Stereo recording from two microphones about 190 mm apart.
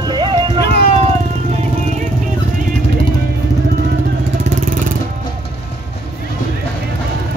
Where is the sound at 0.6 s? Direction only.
55° left (ahead or behind).